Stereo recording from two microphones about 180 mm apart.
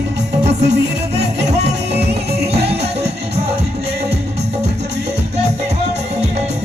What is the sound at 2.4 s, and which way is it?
Music, 65° right (ahead or behind).